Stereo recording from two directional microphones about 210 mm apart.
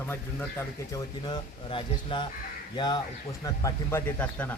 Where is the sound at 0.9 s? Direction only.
25° left (ahead or behind).